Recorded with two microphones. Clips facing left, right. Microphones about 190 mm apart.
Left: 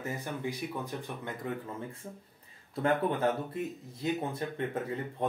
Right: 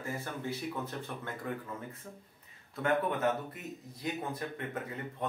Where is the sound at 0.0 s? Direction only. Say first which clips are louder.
Left 2 dB; 15° left (ahead or behind).